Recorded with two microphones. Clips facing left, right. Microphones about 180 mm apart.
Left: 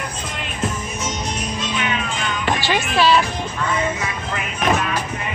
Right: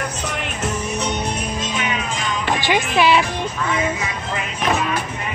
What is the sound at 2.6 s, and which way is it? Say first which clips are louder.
Speech: right 2 dB; 15° right (ahead or behind).